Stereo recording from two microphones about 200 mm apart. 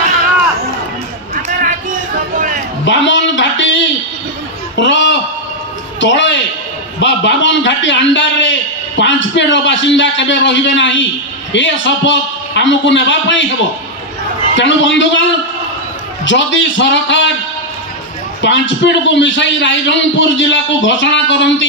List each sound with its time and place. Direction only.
2.8 s a sound: 65° left (ahead or behind)
7.0 s a man's voice: 65° left (ahead or behind)
14.5 s a man's voice: 65° left (ahead or behind)
16.3 s a man's voice: 65° left (ahead or behind)
18.4 s a man's voice: 65° left (ahead or behind)